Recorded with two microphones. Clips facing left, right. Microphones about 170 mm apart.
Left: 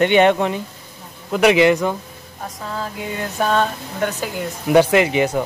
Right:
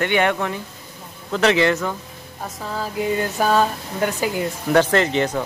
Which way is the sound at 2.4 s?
5° right (ahead or behind).